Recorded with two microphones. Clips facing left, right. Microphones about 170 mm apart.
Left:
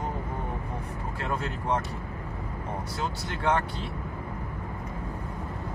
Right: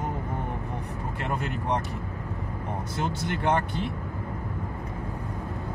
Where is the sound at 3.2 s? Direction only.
20° right (ahead or behind).